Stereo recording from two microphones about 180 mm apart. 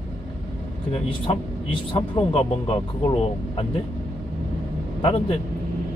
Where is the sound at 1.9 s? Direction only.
30° left (ahead or behind).